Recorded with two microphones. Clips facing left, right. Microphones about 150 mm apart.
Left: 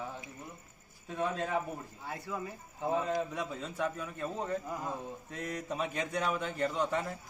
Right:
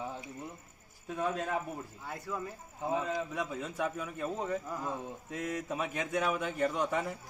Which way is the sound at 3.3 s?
10° right (ahead or behind).